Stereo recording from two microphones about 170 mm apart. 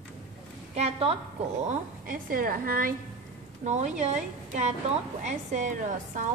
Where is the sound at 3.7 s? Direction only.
45° right (ahead or behind).